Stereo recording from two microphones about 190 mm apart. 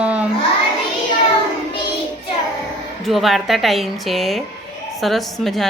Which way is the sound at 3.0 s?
Centre (ahead or behind).